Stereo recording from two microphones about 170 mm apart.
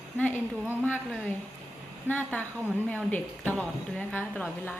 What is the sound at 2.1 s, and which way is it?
A woman's voice, 10° left (ahead or behind).